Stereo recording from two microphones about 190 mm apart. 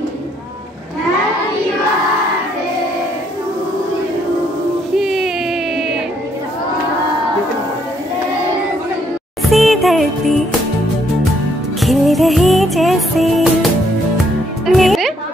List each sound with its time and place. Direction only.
4.9 s a sound: centre (ahead or behind)
9.4 s music: centre (ahead or behind)
11.8 s music: centre (ahead or behind)
14.7 s music: centre (ahead or behind)